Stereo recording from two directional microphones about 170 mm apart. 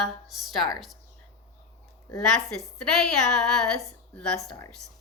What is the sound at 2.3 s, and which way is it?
A woman's voice, 5° left (ahead or behind).